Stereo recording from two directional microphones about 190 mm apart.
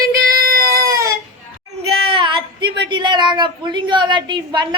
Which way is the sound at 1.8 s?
30° right (ahead or behind).